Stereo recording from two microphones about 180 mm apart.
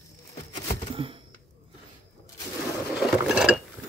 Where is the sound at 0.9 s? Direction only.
30° right (ahead or behind).